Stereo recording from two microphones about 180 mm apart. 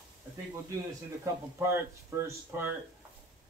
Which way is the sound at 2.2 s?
10° right (ahead or behind).